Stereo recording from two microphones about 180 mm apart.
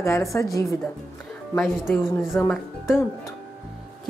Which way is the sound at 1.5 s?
Centre (ahead or behind).